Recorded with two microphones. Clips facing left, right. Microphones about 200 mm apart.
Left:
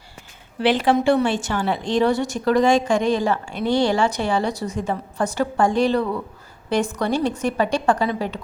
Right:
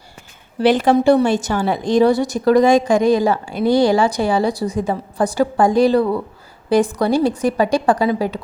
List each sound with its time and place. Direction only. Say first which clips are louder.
0.6 s a woman's voice: right 4 dB; 45° right (ahead or behind)